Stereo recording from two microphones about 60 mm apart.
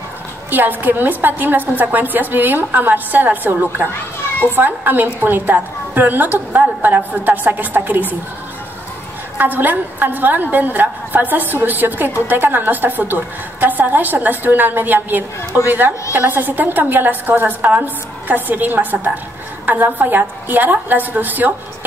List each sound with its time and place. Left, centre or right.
0.5 s a woman's voice: right
9.4 s a woman's voice: right